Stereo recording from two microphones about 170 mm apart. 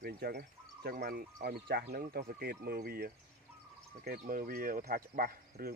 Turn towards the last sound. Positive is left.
turn(degrees=-60)  # may be behind; listen again after turning